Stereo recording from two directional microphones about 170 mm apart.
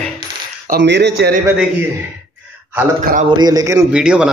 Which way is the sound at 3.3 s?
25° right (ahead or behind).